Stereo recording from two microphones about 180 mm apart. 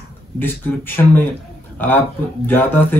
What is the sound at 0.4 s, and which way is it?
Speech, 10° left (ahead or behind).